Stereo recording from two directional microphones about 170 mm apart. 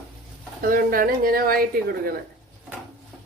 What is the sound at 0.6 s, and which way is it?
Speech, 55° right (ahead or behind).